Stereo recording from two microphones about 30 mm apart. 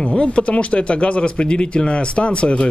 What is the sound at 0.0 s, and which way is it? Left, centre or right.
Speech, left.